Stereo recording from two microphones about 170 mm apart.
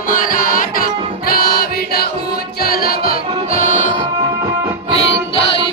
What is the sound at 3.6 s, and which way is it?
Music, 50° left (ahead or behind).